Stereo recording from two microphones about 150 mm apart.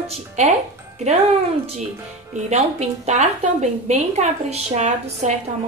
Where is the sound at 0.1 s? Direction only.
50° right (ahead or behind).